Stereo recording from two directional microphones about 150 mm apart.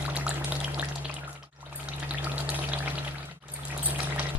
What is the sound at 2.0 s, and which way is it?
Frying, 10° right (ahead or behind).